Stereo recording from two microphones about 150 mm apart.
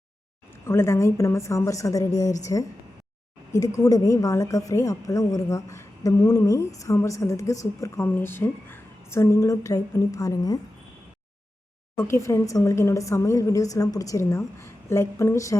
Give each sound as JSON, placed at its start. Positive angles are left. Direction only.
{"t": 0.5, "sound": "a woman's voice", "side_deg": 15}
{"t": 3.5, "sound": "a woman's voice", "side_deg": 20}
{"t": 11.9, "sound": "a woman's voice", "side_deg": 20}